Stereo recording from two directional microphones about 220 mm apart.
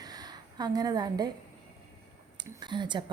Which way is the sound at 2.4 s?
20° right (ahead or behind).